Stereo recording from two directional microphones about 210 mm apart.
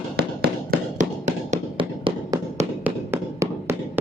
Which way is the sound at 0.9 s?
35° right (ahead or behind).